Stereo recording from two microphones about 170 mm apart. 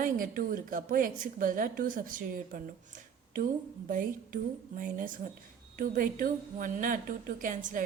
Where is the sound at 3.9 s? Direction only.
50° right (ahead or behind).